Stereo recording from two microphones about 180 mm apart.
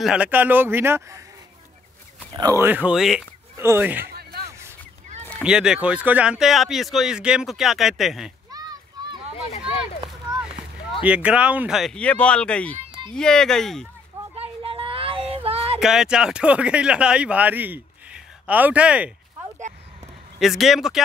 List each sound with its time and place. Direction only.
0.0 s speech: 5° right (ahead or behind)
2.3 s speech: 20° right (ahead or behind); by 3.3 s 5° right (ahead or behind)
3.5 s speech: 15° right (ahead or behind)
5.4 s speech: 5° right (ahead or behind)
8.5 s children playing: 20° right (ahead or behind)
11.1 s speech: 5° right (ahead or behind)
14.3 s a sound: 35° right (ahead or behind)
15.8 s speech: 5° right (ahead or behind)
20.3 s speech: centre (ahead or behind)